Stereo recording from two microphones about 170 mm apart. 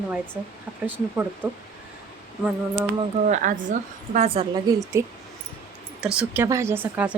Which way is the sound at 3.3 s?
50° right (ahead or behind).